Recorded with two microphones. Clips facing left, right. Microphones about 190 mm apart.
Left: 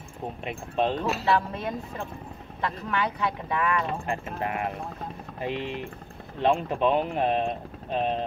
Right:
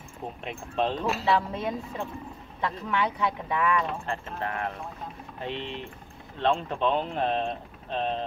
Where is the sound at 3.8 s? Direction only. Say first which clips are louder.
Left 2 dB; 10° left (ahead or behind).